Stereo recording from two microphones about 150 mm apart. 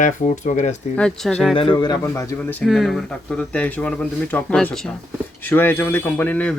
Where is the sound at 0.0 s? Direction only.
55° left (ahead or behind).